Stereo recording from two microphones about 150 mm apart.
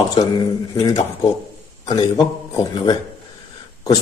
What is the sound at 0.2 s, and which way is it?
A man's voice, 30° left (ahead or behind).